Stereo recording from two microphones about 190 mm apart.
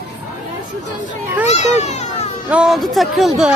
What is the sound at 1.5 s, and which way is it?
Speech, 35° left (ahead or behind).